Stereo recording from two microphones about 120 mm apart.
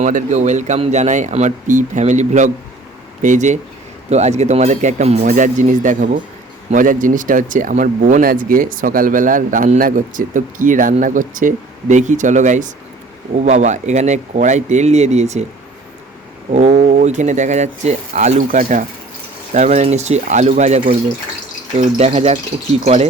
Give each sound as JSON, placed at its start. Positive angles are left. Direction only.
{"t": 0.0, "sound": "speech", "side_deg": -90}
{"t": 4.1, "sound": "speech", "side_deg": -70}
{"t": 13.4, "sound": "speech", "side_deg": -75}
{"t": 16.5, "sound": "speech", "side_deg": -70}
{"t": 19.5, "sound": "speech", "side_deg": -75}